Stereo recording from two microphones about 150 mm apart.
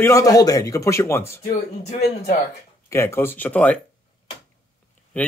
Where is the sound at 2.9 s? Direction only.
15° left (ahead or behind).